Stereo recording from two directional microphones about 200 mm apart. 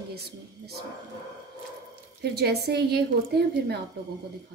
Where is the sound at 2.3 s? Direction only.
55° right (ahead or behind).